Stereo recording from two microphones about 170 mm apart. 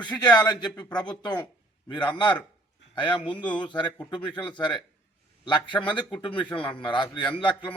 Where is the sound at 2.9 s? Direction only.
30° left (ahead or behind).